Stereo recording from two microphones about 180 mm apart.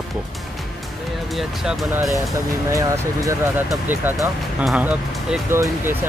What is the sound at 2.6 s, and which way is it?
Speech, 15° right (ahead or behind).